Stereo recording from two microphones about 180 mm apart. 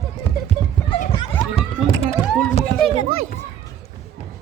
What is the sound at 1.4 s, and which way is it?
Children playing, 35° left (ahead or behind).